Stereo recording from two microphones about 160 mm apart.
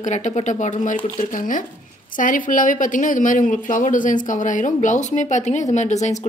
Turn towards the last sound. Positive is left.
turn(degrees=45)  # may be behind; listen again after turning